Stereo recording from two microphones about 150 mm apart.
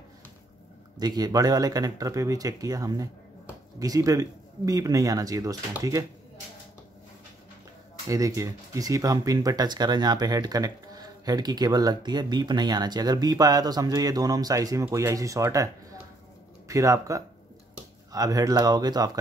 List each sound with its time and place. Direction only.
0.9 s speech: 25° right (ahead or behind)
8.1 s speech: 20° right (ahead or behind)